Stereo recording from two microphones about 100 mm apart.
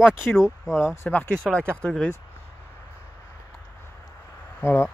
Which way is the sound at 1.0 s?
15° left (ahead or behind).